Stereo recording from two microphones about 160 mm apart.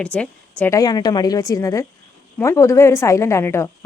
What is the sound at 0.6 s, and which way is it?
A woman's voice, 20° left (ahead or behind).